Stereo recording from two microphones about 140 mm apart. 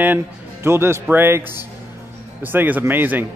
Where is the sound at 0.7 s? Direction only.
20° right (ahead or behind).